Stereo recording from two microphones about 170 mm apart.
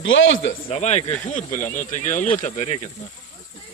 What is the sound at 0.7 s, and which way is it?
A man's voice, 40° left (ahead or behind).